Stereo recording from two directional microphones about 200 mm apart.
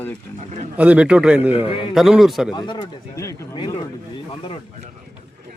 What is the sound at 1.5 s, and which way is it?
Speech, 25° left (ahead or behind).